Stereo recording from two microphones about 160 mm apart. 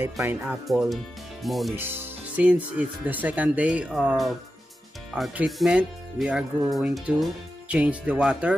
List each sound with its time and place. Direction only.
0.0 s speech: 10° right (ahead or behind)
0.7 s speech: centre (ahead or behind)
1.8 s speech: 15° right (ahead or behind)